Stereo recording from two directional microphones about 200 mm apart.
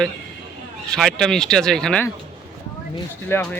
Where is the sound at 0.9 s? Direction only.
5° left (ahead or behind).